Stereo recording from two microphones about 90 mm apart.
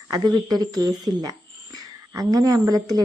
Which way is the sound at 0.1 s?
45° right (ahead or behind).